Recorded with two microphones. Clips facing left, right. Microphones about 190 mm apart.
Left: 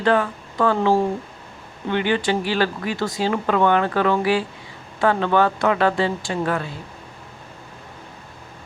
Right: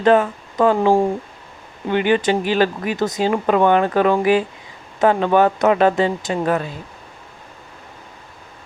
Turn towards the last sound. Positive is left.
turn(degrees=-20)  # may be behind; listen again after turning